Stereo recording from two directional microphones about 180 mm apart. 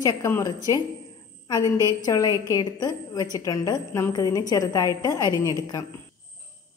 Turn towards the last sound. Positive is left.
turn(degrees=20)  # may be behind; listen again after turning